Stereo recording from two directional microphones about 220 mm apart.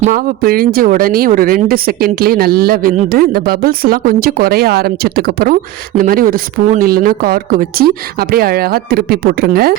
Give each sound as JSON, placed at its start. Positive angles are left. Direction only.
{"t": 0.0, "sound": "speech", "side_deg": -40}